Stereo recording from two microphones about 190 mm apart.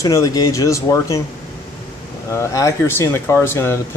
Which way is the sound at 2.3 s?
15° left (ahead or behind).